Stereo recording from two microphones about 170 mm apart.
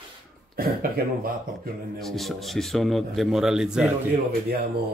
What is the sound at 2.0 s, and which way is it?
A man's voice, centre (ahead or behind).